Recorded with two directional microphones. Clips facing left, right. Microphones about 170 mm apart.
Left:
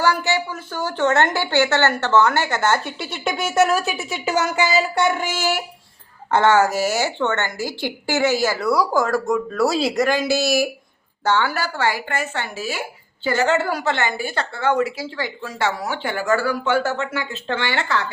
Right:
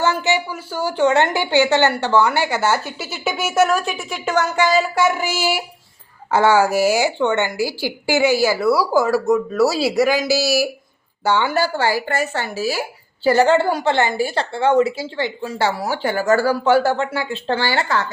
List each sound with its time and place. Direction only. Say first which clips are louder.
0.0 s a woman's voice: right 1 dB; 20° right (ahead or behind)
11.5 s a woman's voice: right 4 dB; 30° right (ahead or behind)